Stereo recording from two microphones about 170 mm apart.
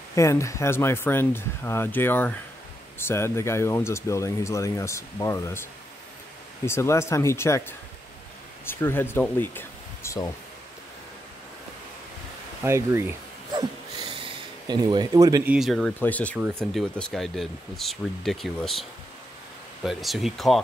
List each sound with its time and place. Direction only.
0.1 s speech: 15° left (ahead or behind)
12.6 s speech: 15° right (ahead or behind)
13.5 s a sound: 25° right (ahead or behind)
15.4 s speech: 5° right (ahead or behind)